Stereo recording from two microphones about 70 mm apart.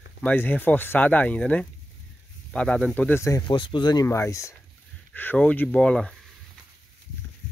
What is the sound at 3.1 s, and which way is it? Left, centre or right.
Speech, left.